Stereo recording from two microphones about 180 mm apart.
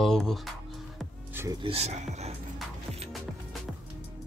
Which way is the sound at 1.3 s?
15° right (ahead or behind).